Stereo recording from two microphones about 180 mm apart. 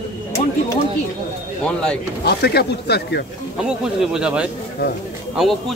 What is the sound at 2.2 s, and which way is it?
Speech, 65° left (ahead or behind).